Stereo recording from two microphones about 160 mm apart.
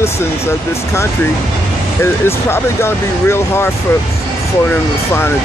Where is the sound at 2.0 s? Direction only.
15° left (ahead or behind).